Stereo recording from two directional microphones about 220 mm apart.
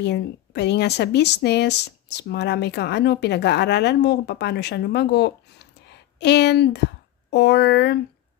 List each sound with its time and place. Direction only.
0.0 s speech: 50° left (ahead or behind)